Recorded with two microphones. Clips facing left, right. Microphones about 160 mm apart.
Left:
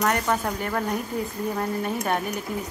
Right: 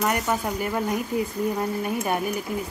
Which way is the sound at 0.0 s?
5° right (ahead or behind).